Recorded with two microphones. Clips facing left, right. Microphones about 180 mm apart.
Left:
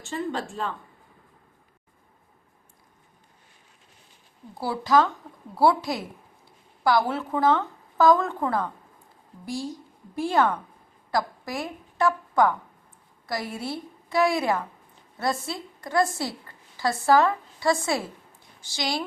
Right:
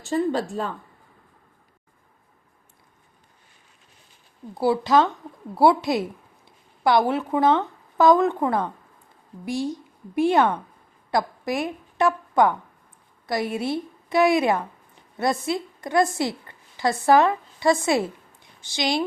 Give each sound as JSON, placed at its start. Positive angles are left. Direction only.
{"t": 0.0, "sound": "speech", "side_deg": -40}
{"t": 4.6, "sound": "a woman's voice", "side_deg": -20}